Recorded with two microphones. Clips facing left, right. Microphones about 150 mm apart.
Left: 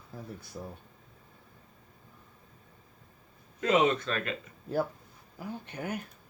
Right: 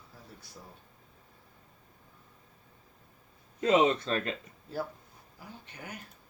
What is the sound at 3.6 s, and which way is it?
Speech, 30° right (ahead or behind).